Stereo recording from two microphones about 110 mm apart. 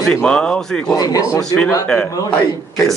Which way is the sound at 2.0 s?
35° left (ahead or behind).